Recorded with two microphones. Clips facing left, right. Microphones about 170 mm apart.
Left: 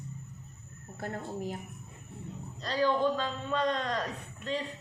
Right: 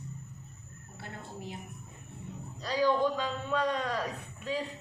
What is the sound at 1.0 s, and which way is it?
Speech, 45° left (ahead or behind).